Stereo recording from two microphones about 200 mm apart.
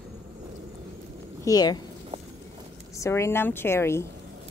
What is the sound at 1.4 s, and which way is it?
Speech, 20° left (ahead or behind).